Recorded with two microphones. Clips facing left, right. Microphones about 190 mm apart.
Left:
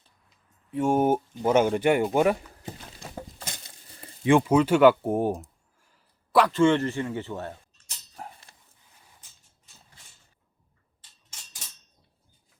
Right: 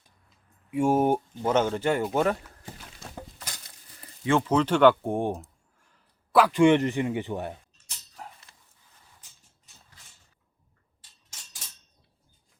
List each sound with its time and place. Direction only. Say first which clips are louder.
0.7 s speech: even; 10° right (ahead or behind)
1.4 s speech: left 3 dB; 10° left (ahead or behind)
3.3 s a sound: left 3 dB; 25° left (ahead or behind); by 6.5 s centre (ahead or behind)
6.5 s speech: right 2 dB; 15° right (ahead or behind)
8.1 s dog: left 3 dB; 30° left (ahead or behind)